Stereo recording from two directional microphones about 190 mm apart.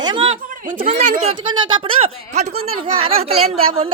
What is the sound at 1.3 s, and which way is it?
Speech, 25° right (ahead or behind).